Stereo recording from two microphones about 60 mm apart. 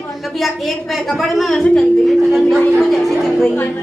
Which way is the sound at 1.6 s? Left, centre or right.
Centre.